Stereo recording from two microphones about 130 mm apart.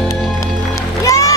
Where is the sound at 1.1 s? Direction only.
25° left (ahead or behind).